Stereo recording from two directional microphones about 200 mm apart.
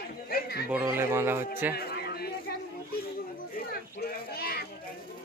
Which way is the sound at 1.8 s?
50° left (ahead or behind).